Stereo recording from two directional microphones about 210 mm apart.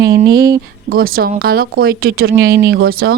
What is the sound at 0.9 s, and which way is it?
A woman's voice, 45° right (ahead or behind).